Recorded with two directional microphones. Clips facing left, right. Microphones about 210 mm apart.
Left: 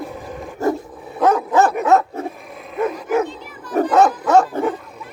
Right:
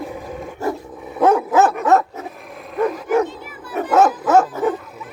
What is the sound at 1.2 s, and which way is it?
Dog, 10° right (ahead or behind).